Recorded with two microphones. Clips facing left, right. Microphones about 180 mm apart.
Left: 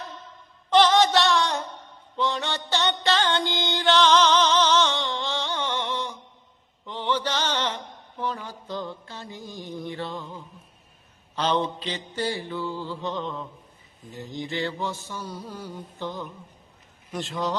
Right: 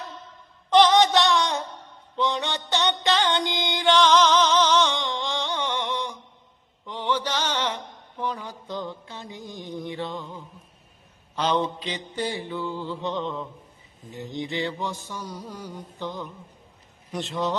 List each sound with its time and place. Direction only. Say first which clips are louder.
0.7 s a sound: right 1 dB; 15° right (ahead or behind)
2.1 s music: right 1 dB; 20° right (ahead or behind)
6.8 s mantra: even; 10° right (ahead or behind)
8.2 s a sound: even; 15° right (ahead or behind)
9.0 s mantra: right 1 dB; 15° right (ahead or behind)
11.3 s mantra: right 1 dB; 10° right (ahead or behind)
13.0 s music: right 3 dB; 20° right (ahead or behind)
14.1 s mantra: right 1 dB; 20° right (ahead or behind)
17.1 s speech: right 1 dB; 20° right (ahead or behind)